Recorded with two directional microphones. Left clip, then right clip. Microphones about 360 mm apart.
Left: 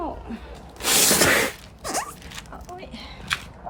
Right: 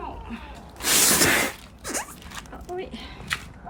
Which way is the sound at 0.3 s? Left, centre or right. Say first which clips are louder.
Left 1 dB; centre.